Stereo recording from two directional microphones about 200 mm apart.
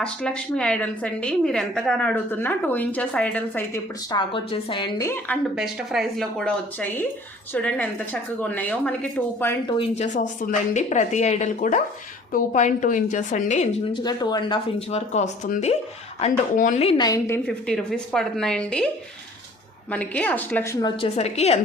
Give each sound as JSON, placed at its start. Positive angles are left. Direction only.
{"t": 0.0, "sound": "a woman's voice", "side_deg": 5}
{"t": 4.1, "sound": "speech", "side_deg": 25}
{"t": 5.5, "sound": "a woman's voice", "side_deg": 0}
{"t": 9.7, "sound": "speech", "side_deg": 30}
{"t": 13.9, "sound": "speech", "side_deg": 20}
{"t": 17.0, "sound": "a woman's voice", "side_deg": 15}
{"t": 19.9, "sound": "speech", "side_deg": 5}